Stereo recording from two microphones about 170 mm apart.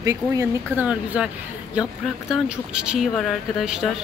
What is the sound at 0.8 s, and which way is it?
Music, 5° right (ahead or behind).